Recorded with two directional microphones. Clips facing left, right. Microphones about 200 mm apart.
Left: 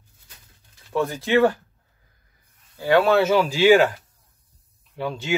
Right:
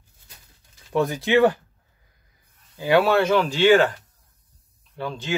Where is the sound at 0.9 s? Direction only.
15° right (ahead or behind).